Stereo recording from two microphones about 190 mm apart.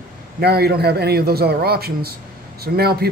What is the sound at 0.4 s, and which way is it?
Speech, 55° right (ahead or behind).